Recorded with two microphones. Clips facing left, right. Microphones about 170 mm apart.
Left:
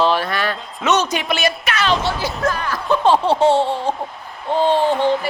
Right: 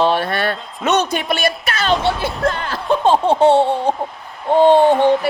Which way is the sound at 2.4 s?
30° right (ahead or behind).